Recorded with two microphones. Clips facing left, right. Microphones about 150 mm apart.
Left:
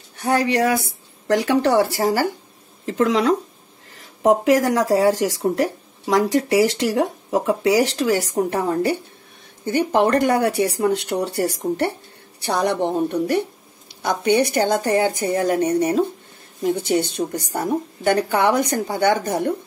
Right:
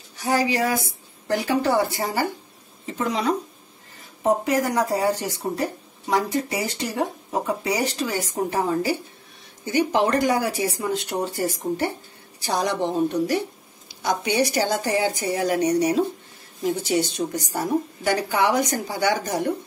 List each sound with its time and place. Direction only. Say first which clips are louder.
0.2 s a woman's voice: left 3 dB; 60° left (ahead or behind)
1.2 s speech: left 4 dB; 75° left (ahead or behind)
12.4 s a woman's voice: left 3 dB; 60° left (ahead or behind)